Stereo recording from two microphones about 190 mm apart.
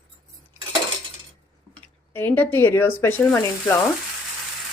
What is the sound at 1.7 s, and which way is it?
Speech, 10° left (ahead or behind).